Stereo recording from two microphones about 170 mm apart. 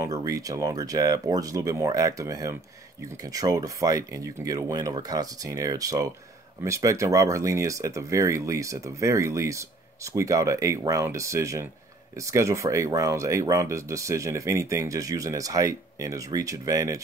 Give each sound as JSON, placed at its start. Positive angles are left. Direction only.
{"t": 0.0, "sound": "speech", "side_deg": -20}